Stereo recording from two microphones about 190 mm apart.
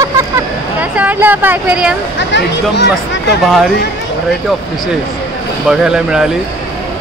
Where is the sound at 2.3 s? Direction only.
65° left (ahead or behind).